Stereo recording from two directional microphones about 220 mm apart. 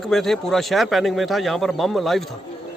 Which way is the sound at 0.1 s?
Centre (ahead or behind).